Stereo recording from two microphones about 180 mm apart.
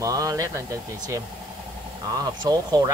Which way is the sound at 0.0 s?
20° right (ahead or behind).